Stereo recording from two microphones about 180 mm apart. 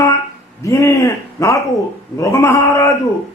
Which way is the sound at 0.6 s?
15° left (ahead or behind).